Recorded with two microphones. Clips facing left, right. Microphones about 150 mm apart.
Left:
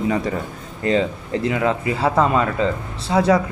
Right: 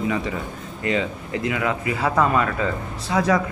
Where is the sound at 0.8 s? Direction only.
35° left (ahead or behind).